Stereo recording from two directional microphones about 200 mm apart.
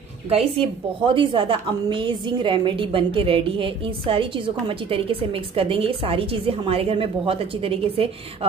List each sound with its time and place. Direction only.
0.3 s a woman's voice: 30° right (ahead or behind)